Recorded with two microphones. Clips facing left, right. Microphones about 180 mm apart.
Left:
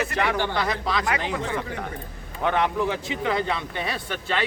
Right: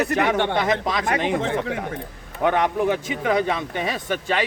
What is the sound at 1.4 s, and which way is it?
Speech, 75° right (ahead or behind).